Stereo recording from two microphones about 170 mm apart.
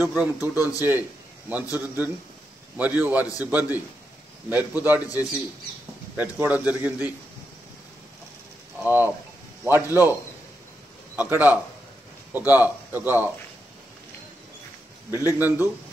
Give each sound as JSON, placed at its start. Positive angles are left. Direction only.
{"t": 0.0, "sound": "a man's voice", "side_deg": -15}
{"t": 0.6, "sound": "a man's voice", "side_deg": 20}
{"t": 1.5, "sound": "a man's voice", "side_deg": -10}
{"t": 6.1, "sound": "a man's voice", "side_deg": -10}
{"t": 8.8, "sound": "a man's voice", "side_deg": -10}
{"t": 11.1, "sound": "a man's voice", "side_deg": -10}
{"t": 15.0, "sound": "a man's voice", "side_deg": 20}
{"t": 15.3, "sound": "a man's voice", "side_deg": -10}